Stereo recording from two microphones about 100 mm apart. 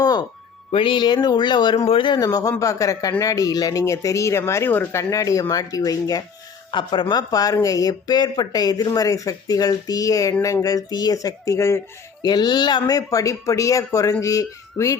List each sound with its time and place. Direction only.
0.0 s a sound: 40° left (ahead or behind)
0.7 s speech: 60° left (ahead or behind)
2.1 s speech: 40° left (ahead or behind)
6.7 s speech: 50° left (ahead or behind); by 11.8 s 30° left (ahead or behind)
12.2 s speech: 45° left (ahead or behind)
13.0 s speech: 35° left (ahead or behind)